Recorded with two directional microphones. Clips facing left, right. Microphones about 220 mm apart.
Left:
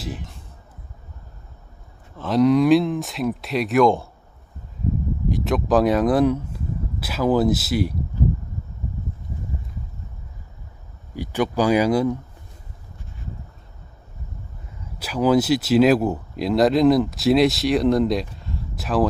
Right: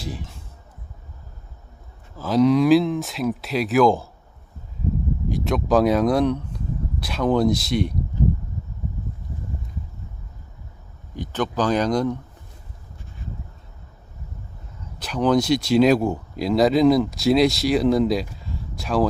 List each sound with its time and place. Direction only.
0.0 s speech: centre (ahead or behind)
2.1 s speech: centre (ahead or behind)
5.3 s speech: centre (ahead or behind)
11.1 s speech: 10° left (ahead or behind)
14.9 s speech: 5° left (ahead or behind)